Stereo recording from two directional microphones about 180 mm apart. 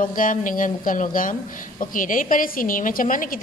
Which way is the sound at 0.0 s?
50° left (ahead or behind).